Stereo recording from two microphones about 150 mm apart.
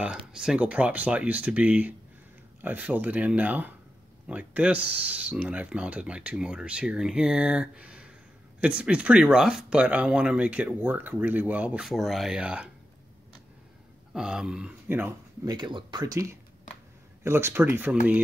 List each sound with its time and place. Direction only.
0.3 s speech: 5° right (ahead or behind)
14.1 s speech: 5° right (ahead or behind)
15.5 s speech: 30° right (ahead or behind); by 17.9 s 15° right (ahead or behind)